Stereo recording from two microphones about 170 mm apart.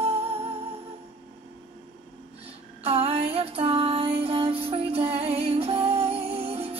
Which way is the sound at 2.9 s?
35° right (ahead or behind).